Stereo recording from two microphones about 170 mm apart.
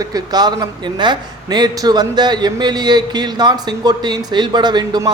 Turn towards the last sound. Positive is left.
turn(degrees=-25)  # may be behind; listen again after turning